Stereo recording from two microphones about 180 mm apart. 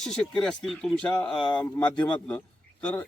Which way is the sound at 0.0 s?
5° left (ahead or behind).